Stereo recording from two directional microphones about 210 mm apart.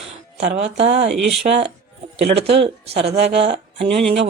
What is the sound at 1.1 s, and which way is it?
Speech, centre (ahead or behind).